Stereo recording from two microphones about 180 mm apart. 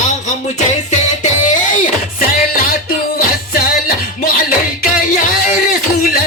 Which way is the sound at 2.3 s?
55° left (ahead or behind).